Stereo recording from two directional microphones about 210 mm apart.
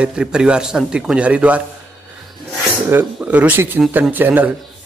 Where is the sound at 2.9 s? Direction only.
10° right (ahead or behind).